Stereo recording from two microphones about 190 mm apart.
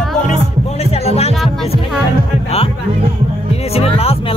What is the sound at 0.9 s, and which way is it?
Music, 35° left (ahead or behind).